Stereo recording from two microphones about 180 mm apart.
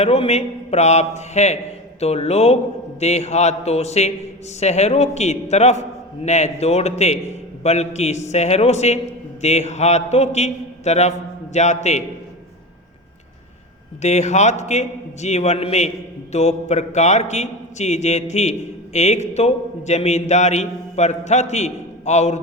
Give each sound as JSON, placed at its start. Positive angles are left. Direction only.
{"t": 0.0, "sound": "a man's voice", "side_deg": 35}
{"t": 14.0, "sound": "a man's voice", "side_deg": 40}